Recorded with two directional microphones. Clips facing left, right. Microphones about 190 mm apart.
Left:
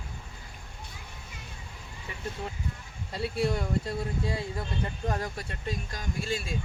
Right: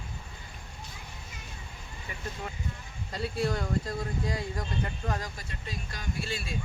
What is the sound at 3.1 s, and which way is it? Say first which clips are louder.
Speech: left 2 dB; 25° left (ahead or behind).